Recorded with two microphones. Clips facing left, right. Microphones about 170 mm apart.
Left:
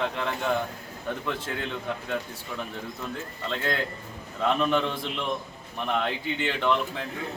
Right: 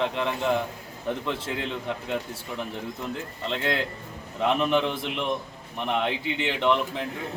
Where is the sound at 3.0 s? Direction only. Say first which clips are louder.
Right 1 dB; 25° right (ahead or behind).